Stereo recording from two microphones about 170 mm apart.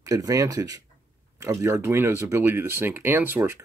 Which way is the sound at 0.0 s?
20° right (ahead or behind).